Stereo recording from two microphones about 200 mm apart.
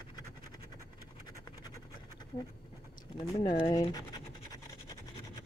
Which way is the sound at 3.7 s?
20° left (ahead or behind).